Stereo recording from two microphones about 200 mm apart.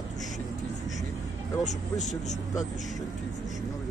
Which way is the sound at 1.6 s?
35° left (ahead or behind).